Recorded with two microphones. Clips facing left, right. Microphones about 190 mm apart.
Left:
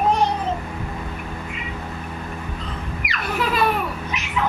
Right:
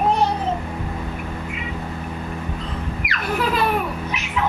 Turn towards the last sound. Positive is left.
turn(degrees=-50)  # may be behind; listen again after turning